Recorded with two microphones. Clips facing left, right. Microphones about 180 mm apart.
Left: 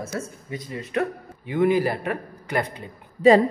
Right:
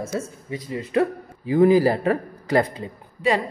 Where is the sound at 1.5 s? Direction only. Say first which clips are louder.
Right 5 dB; 35° right (ahead or behind).